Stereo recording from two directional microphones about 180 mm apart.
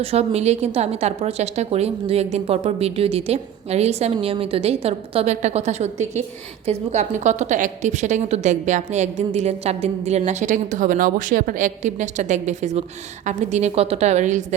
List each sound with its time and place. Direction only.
0.0 s a woman's voice: 35° right (ahead or behind)